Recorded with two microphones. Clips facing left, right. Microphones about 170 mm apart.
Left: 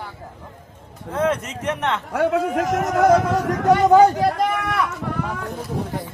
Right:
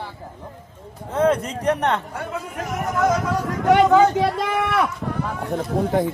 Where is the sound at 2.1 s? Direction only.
75° left (ahead or behind).